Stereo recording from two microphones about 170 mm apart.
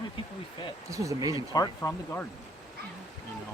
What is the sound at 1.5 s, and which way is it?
Speech, 20° left (ahead or behind).